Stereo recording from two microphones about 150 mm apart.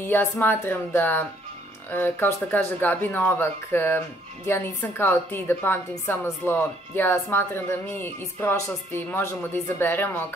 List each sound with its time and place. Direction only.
0.0 s a woman's voice: 15° left (ahead or behind)